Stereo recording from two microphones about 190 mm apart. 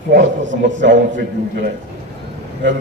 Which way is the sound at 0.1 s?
70° right (ahead or behind).